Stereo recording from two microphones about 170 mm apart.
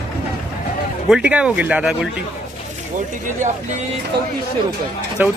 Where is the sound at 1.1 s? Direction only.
5° right (ahead or behind).